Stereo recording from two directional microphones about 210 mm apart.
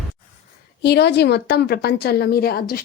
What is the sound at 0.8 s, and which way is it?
A woman's voice, 55° left (ahead or behind).